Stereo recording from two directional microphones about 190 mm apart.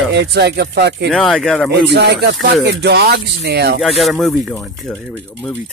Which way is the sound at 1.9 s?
60° right (ahead or behind).